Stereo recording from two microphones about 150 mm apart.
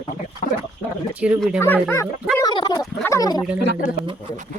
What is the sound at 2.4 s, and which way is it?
Gargling, 30° left (ahead or behind).